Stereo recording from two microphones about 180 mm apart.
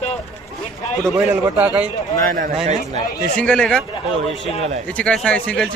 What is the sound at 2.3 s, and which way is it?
Speech, 45° right (ahead or behind).